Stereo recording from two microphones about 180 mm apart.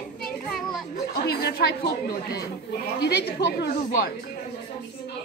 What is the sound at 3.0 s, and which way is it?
A woman's voice, 65° left (ahead or behind).